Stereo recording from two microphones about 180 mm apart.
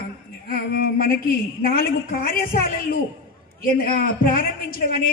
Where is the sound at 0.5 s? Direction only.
55° left (ahead or behind).